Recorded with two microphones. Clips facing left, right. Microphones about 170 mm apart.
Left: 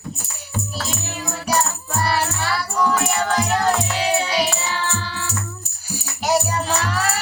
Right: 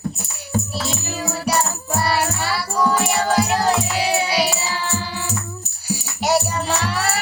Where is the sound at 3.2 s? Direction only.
35° right (ahead or behind).